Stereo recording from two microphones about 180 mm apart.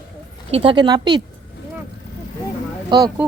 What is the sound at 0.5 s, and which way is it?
Speech, 30° right (ahead or behind).